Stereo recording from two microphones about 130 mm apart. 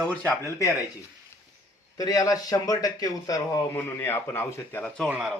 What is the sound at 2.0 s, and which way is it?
A man's voice, 25° left (ahead or behind).